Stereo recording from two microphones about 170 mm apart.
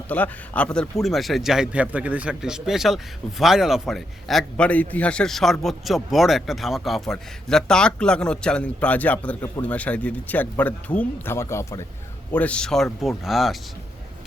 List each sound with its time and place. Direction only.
0.1 s speech: 10° left (ahead or behind)